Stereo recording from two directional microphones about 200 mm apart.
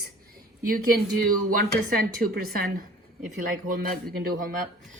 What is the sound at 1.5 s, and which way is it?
Speech, 45° right (ahead or behind).